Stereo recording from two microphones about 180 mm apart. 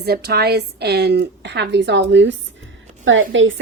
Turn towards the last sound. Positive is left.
turn(degrees=-90)